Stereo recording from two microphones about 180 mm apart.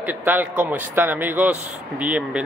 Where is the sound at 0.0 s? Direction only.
10° right (ahead or behind).